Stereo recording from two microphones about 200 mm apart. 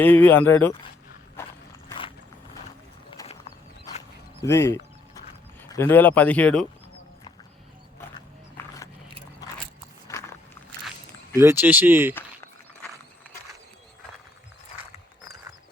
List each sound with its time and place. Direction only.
0.0 s speech: 10° left (ahead or behind)
1.4 s horse: 10° left (ahead or behind)
1.9 s vehicle: 25° left (ahead or behind)
3.1 s a sound: 30° left (ahead or behind)
5.7 s speech: 10° left (ahead or behind)
8.6 s a sound: 10° left (ahead or behind)
10.1 s walk: 15° left (ahead or behind)
11.3 s speech: 10° right (ahead or behind)